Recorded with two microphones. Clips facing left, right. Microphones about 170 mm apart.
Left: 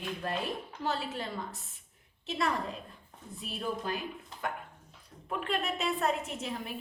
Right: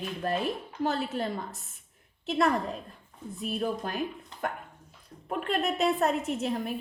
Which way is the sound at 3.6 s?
50° right (ahead or behind).